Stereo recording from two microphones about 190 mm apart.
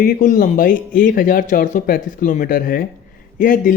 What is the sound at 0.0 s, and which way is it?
Speech, 45° left (ahead or behind).